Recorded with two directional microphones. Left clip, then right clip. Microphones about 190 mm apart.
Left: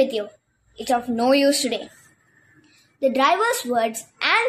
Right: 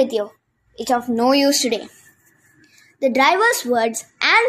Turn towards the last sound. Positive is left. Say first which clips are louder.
# right 4 dB
turn(degrees=-15)  # may be behind; listen again after turning